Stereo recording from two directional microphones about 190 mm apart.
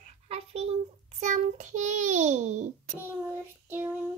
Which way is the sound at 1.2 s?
40° right (ahead or behind).